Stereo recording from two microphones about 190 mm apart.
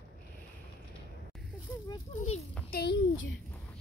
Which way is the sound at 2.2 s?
35° left (ahead or behind).